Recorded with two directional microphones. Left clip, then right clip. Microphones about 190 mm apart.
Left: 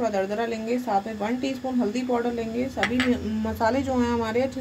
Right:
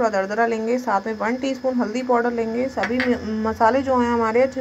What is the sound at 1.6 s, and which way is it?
Speech, 25° right (ahead or behind).